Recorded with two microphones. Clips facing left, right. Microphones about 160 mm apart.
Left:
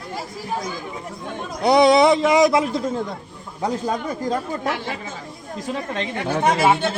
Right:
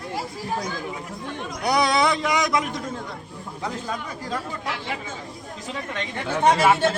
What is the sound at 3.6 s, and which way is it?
Speech, 40° left (ahead or behind).